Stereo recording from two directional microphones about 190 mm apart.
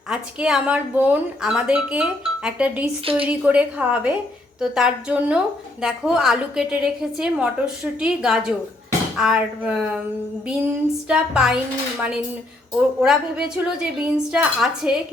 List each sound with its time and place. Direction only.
0.1 s speech: 5° right (ahead or behind)
3.0 s a woman's voice: 30° right (ahead or behind)
3.2 s a woman's voice: 5° right (ahead or behind)